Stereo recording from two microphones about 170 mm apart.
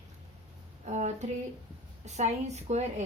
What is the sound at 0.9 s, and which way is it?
A woman's voice, 40° right (ahead or behind).